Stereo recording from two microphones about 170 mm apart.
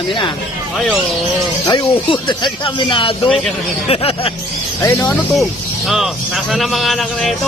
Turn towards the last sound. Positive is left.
turn(degrees=0)  # may be behind; listen again after turning